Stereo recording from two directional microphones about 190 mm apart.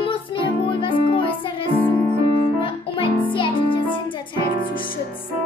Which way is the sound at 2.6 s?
25° left (ahead or behind).